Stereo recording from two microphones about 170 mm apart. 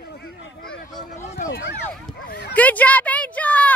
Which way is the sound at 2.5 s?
10° left (ahead or behind).